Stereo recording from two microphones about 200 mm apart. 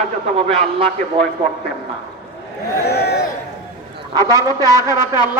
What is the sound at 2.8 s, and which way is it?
Speech, 55° left (ahead or behind).